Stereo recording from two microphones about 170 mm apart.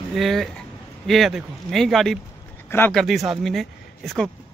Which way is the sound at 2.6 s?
10° left (ahead or behind).